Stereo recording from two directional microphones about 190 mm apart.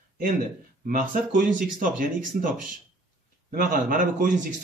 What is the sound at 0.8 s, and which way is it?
A man's voice, 45° right (ahead or behind).